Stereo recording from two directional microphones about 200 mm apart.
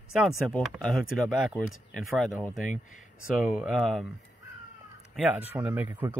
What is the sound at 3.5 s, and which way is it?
Speech, 5° right (ahead or behind).